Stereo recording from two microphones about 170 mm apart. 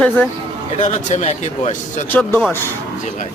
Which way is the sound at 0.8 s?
45° left (ahead or behind).